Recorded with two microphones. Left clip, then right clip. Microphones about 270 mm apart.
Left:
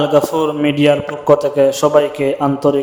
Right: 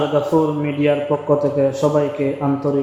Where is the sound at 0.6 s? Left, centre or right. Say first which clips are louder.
Left 5 dB; left.